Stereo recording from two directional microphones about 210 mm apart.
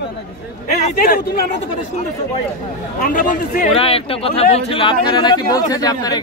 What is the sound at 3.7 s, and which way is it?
A man's voice, 25° left (ahead or behind).